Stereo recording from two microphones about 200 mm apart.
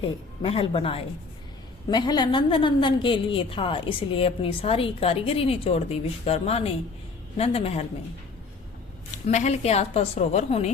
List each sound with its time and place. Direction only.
0.0 s a woman's voice: 30° left (ahead or behind)
9.1 s a woman's voice: 35° left (ahead or behind)